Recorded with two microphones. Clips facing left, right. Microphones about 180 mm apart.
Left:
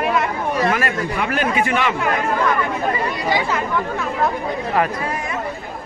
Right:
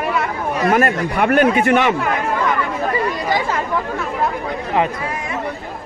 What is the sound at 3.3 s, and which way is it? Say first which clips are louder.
Speech: left 3 dB; 45° right (ahead or behind).